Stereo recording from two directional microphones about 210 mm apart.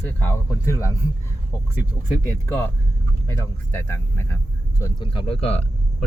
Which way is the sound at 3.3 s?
15° left (ahead or behind).